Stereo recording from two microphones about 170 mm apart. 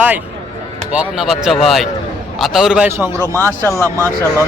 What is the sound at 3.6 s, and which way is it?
Speech, 15° left (ahead or behind).